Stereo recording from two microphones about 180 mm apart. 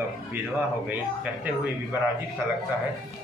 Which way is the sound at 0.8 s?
10° right (ahead or behind).